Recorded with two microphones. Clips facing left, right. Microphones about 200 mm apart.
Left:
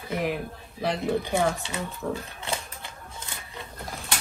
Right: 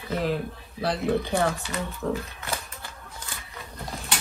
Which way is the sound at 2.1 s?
30° left (ahead or behind).